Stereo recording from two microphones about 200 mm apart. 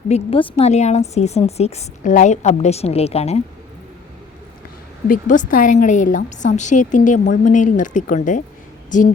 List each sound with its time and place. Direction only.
0.1 s a woman's voice: 25° left (ahead or behind)
5.0 s a woman's voice: 40° left (ahead or behind)